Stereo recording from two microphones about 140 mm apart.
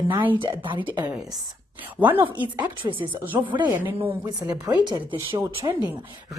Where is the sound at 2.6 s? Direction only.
35° right (ahead or behind).